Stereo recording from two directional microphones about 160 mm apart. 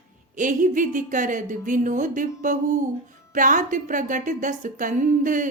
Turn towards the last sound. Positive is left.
turn(degrees=-55)  # may be behind; listen again after turning